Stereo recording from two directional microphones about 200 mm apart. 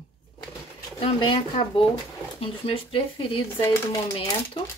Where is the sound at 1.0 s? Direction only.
25° left (ahead or behind).